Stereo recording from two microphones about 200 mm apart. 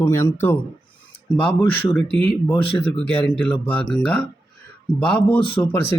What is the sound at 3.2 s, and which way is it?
Speech, 5° left (ahead or behind).